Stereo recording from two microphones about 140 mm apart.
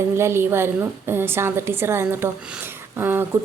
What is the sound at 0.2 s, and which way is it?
A woman's voice, 15° right (ahead or behind).